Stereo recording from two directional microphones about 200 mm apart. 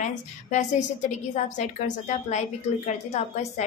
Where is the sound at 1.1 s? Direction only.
35° left (ahead or behind).